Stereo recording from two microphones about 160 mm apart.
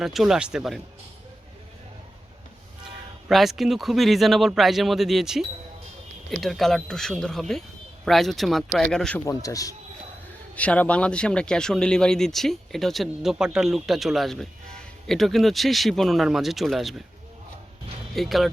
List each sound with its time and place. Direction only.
0.0 s speech: centre (ahead or behind)
3.2 s speech: centre (ahead or behind)
9.2 s speech: 20° left (ahead or behind)
10.5 s speech: 10° left (ahead or behind)
18.1 s speech: centre (ahead or behind)